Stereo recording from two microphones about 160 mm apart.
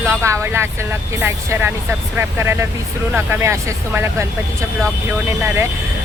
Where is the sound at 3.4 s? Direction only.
15° right (ahead or behind).